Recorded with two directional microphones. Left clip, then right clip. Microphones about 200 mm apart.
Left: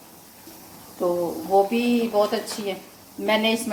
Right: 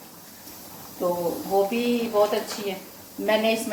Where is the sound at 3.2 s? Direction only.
35° left (ahead or behind).